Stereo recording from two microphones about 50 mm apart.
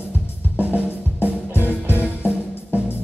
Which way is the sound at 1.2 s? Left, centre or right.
Right.